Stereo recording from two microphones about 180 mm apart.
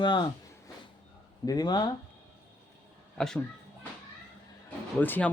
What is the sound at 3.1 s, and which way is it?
Speech, 5° left (ahead or behind).